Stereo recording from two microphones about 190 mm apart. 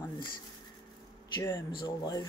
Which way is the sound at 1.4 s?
20° left (ahead or behind).